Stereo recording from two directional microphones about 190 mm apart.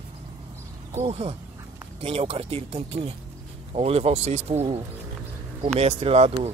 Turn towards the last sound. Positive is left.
turn(degrees=-30)  # may be behind; listen again after turning